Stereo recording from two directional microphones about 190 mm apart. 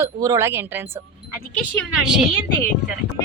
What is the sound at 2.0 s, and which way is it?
Speech, 5° right (ahead or behind).